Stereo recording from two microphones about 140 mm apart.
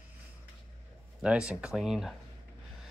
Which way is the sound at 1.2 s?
5° right (ahead or behind).